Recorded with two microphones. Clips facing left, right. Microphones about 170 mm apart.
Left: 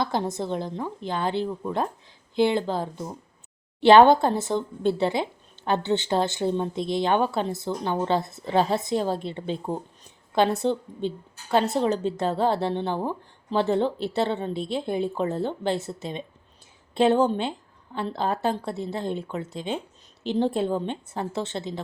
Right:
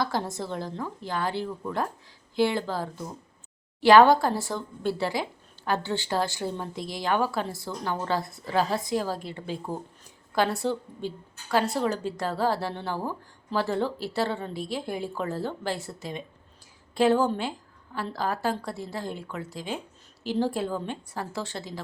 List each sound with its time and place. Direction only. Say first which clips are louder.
0.0 s speech: left 3 dB; 20° left (ahead or behind)